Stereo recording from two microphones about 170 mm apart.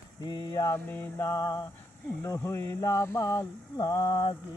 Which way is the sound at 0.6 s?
15° left (ahead or behind).